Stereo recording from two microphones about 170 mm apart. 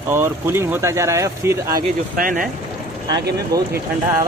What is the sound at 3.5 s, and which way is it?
Speech, 20° right (ahead or behind).